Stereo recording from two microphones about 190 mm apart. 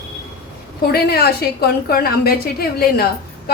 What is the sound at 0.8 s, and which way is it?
A woman's voice, 55° left (ahead or behind).